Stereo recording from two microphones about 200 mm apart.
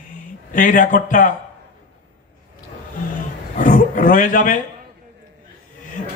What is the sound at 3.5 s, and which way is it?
Speech, 40° left (ahead or behind).